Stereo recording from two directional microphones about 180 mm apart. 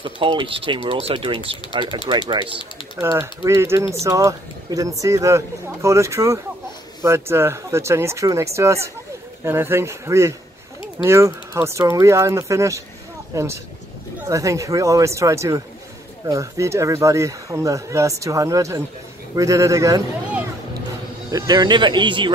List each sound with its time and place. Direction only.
0.0 s speech: 25° right (ahead or behind)
3.0 s speech: 15° right (ahead or behind)
21.3 s speech: 20° right (ahead or behind)